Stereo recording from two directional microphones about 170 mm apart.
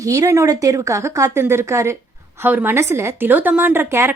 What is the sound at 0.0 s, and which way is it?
A woman's voice, 20° right (ahead or behind).